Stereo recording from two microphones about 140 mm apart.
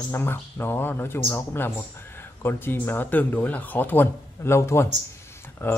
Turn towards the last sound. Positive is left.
turn(degrees=15)  # may be behind; listen again after turning